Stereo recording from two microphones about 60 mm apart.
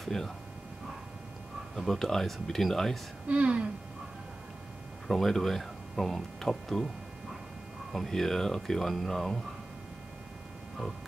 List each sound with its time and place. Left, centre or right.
0.0 s speech: centre
1.8 s speech: centre
3.3 s speech: right
5.0 s speech: centre
7.9 s speech: centre